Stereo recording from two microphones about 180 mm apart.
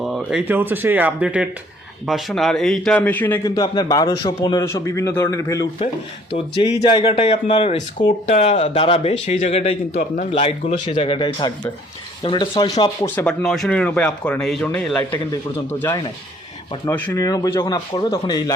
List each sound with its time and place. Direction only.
0.0 s a man's voice: centre (ahead or behind); by 5.6 s 15° left (ahead or behind)
6.3 s speech: 30° left (ahead or behind)
13.1 s speech: 5° left (ahead or behind)
16.9 s speech: 10° left (ahead or behind)